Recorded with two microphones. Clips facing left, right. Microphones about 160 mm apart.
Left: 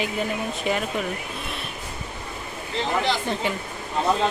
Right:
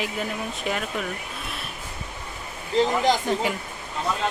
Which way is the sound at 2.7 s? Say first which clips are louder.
Right 7 dB; 40° right (ahead or behind).